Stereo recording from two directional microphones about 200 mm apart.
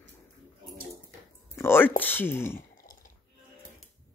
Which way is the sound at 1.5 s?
10° left (ahead or behind).